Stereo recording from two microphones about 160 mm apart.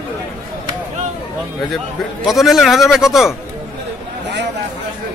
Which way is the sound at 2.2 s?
Centre (ahead or behind).